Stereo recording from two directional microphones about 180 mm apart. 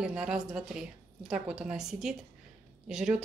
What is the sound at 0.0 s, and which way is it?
Speech, 5° right (ahead or behind).